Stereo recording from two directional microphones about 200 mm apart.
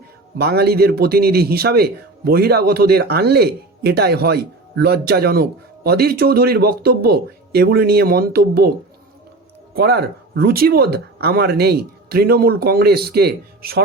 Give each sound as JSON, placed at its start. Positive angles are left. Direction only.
{"t": 0.3, "sound": "a man's voice", "side_deg": -55}
{"t": 9.7, "sound": "a man's voice", "side_deg": -55}